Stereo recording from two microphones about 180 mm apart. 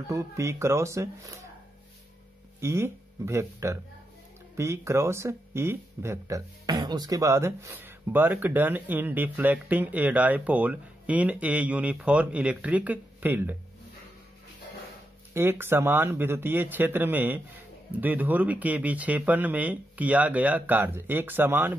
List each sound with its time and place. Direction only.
0.1 s speech: 15° right (ahead or behind)
2.6 s speech: 15° right (ahead or behind)
15.3 s speech: 15° right (ahead or behind)